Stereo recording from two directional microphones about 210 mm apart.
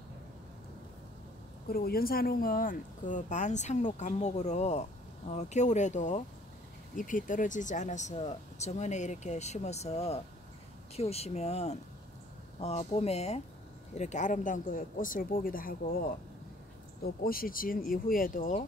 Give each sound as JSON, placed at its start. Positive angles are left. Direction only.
{"t": 1.7, "sound": "speech", "side_deg": 45}
{"t": 17.2, "sound": "speech", "side_deg": 45}